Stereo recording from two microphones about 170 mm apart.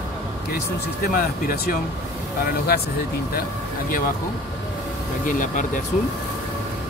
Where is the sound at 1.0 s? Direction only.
55° left (ahead or behind).